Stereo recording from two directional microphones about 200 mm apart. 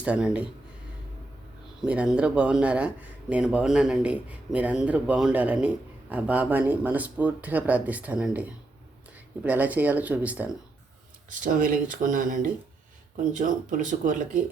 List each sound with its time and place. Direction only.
0.0 s speech: 5° right (ahead or behind)
1.8 s speech: 5° right (ahead or behind)
11.3 s speech: 40° right (ahead or behind)